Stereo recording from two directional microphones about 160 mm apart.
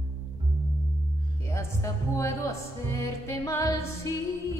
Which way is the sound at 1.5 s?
20° left (ahead or behind).